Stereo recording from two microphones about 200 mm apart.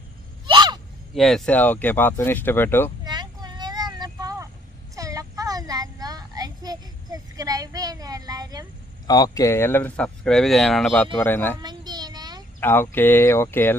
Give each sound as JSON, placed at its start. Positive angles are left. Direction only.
{"t": 0.4, "sound": "a sound", "side_deg": -20}
{"t": 1.1, "sound": "speech", "side_deg": 0}
{"t": 3.0, "sound": "a sound", "side_deg": -20}
{"t": 4.9, "sound": "child singing", "side_deg": -15}
{"t": 9.0, "sound": "speech", "side_deg": 20}
{"t": 11.6, "sound": "child singing", "side_deg": -20}
{"t": 12.5, "sound": "speech", "side_deg": 10}